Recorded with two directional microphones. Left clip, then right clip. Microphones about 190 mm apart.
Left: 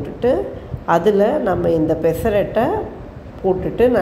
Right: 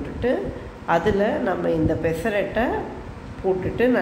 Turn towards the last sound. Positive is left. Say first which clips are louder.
# left 6 dB
turn(degrees=30)  # may be behind; listen again after turning